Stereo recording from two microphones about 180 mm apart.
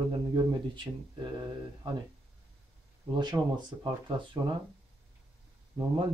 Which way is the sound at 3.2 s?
25° right (ahead or behind).